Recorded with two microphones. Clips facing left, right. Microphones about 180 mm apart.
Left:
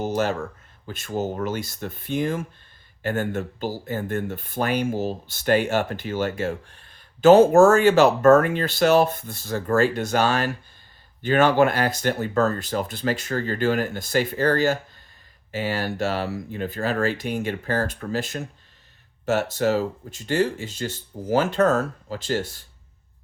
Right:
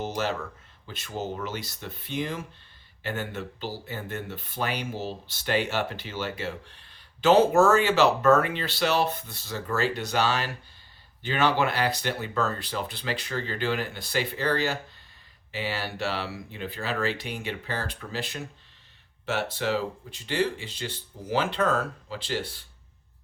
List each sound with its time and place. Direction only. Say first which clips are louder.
0.0 s speech: left 5 dB; 50° left (ahead or behind)